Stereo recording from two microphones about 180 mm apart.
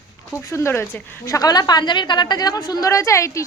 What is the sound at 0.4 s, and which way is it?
A woman's voice, 15° left (ahead or behind).